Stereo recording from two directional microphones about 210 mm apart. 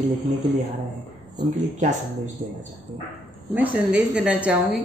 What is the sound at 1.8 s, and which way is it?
Speech, 35° right (ahead or behind).